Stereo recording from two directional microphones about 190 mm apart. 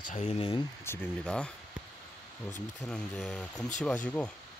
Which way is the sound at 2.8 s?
5° left (ahead or behind).